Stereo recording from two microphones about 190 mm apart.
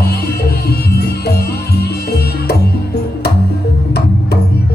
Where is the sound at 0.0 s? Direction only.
55° left (ahead or behind).